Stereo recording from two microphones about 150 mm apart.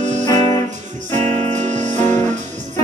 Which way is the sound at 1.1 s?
50° right (ahead or behind).